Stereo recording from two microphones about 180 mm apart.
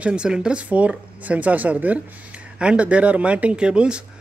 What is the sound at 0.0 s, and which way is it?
Speech, 5° right (ahead or behind).